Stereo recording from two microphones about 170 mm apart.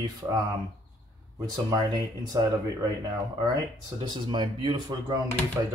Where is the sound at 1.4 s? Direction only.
25° right (ahead or behind).